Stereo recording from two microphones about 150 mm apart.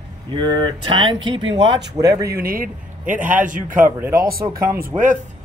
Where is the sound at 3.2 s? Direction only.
60° right (ahead or behind).